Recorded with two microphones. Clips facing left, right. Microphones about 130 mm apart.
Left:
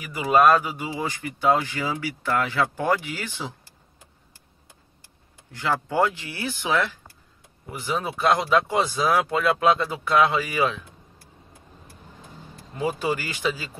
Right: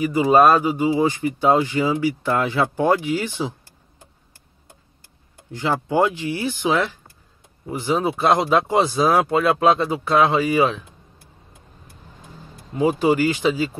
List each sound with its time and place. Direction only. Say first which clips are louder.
0.0 s speech: right 4 dB; 30° right (ahead or behind)
5.5 s speech: right 4 dB; 25° right (ahead or behind)
12.7 s speech: right 8 dB; 25° right (ahead or behind)